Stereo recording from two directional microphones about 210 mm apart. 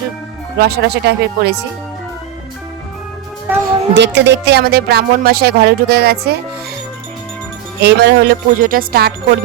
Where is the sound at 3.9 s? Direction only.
55° right (ahead or behind).